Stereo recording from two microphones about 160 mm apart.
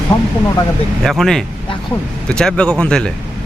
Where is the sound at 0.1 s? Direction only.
25° left (ahead or behind).